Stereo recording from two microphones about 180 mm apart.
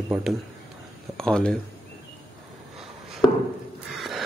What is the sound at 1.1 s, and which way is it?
Speech, 5° left (ahead or behind).